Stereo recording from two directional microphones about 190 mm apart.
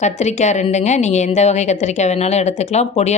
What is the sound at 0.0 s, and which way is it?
A woman's voice, 35° left (ahead or behind).